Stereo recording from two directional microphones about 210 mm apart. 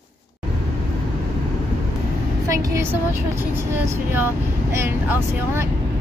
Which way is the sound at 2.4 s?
15° right (ahead or behind).